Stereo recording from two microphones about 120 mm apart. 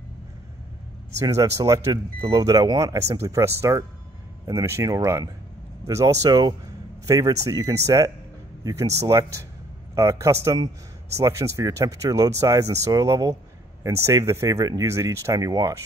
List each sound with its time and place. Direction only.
1.2 s speech: 30° right (ahead or behind)